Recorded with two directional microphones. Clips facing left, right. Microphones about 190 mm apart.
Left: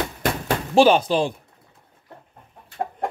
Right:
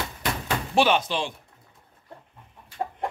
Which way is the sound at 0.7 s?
30° left (ahead or behind).